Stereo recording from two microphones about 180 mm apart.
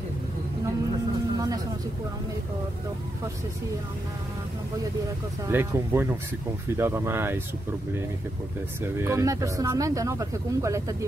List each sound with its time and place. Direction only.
5.5 s speech: 10° right (ahead or behind)
8.8 s speech: 15° right (ahead or behind)